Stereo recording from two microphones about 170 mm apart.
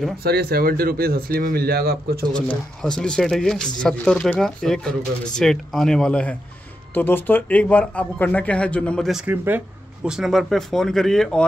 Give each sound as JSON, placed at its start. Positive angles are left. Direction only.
{"t": 0.2, "sound": "speech", "side_deg": -65}
{"t": 2.3, "sound": "speech", "side_deg": 5}